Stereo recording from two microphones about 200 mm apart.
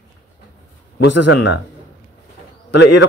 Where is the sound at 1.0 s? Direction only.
65° left (ahead or behind).